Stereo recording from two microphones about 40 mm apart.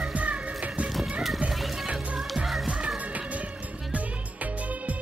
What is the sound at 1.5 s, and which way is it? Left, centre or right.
Music, centre.